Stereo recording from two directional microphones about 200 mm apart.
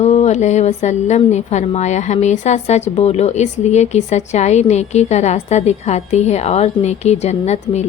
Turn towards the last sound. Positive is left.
turn(degrees=35)  # may be behind; listen again after turning